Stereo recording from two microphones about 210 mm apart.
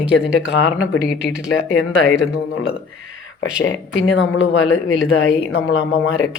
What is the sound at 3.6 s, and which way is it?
Speech, 60° left (ahead or behind).